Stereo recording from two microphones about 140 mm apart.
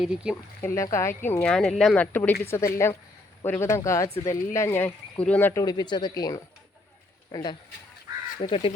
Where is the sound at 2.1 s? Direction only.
15° left (ahead or behind).